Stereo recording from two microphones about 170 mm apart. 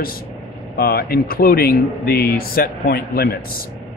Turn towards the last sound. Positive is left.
turn(degrees=65)  # may be behind; listen again after turning